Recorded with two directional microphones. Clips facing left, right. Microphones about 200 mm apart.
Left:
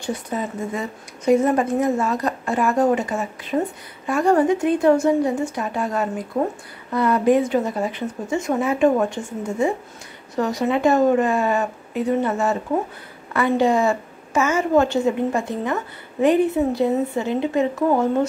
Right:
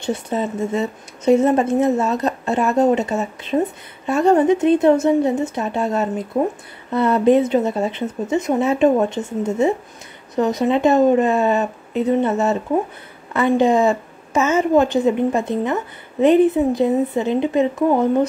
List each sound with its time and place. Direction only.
0.0 s speech: 25° right (ahead or behind)